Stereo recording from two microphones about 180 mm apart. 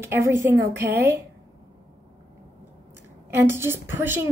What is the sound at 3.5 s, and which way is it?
Speech, 15° right (ahead or behind).